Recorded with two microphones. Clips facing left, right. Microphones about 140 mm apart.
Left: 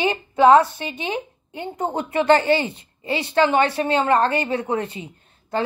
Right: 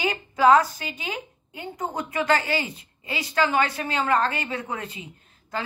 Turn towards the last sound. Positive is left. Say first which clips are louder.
# left 7 dB
turn(degrees=30)  # may be behind; listen again after turning